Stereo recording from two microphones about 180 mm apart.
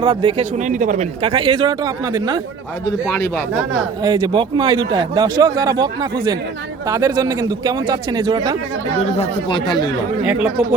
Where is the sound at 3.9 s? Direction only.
25° right (ahead or behind).